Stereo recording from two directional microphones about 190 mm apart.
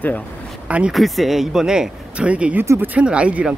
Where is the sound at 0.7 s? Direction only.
5° right (ahead or behind).